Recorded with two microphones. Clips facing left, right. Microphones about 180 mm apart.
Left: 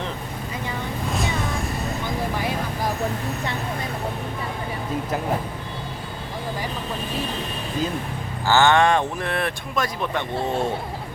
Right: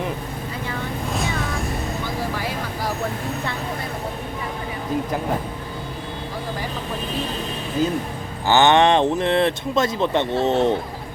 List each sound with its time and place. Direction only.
8.4 s speech: 20° right (ahead or behind)